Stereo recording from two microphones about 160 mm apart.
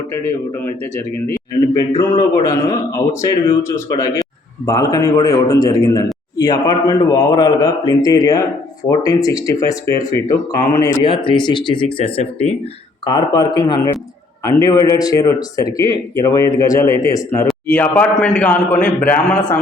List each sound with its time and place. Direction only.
2.0 s a man's voice: 20° left (ahead or behind)
11.0 s speech: 30° left (ahead or behind)
13.1 s a man's voice: 30° left (ahead or behind); by 19.5 s 10° left (ahead or behind)